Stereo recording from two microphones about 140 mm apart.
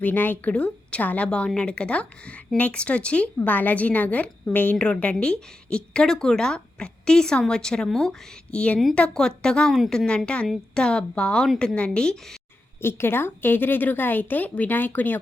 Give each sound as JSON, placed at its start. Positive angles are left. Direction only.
{"t": 0.0, "sound": "a woman's voice", "side_deg": 15}